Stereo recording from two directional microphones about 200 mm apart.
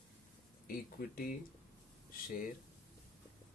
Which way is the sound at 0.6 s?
45° left (ahead or behind).